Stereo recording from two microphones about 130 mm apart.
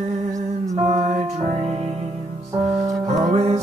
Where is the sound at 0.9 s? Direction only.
70° right (ahead or behind).